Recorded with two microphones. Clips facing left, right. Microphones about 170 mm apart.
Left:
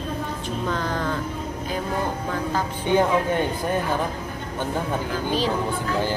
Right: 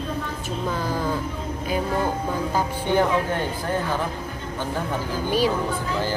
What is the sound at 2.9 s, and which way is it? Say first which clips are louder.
Speech: left 2 dB; 15° left (ahead or behind).